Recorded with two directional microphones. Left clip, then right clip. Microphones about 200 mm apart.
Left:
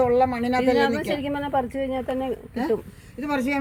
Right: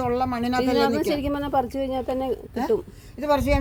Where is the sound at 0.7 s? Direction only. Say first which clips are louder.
Even; 20° right (ahead or behind).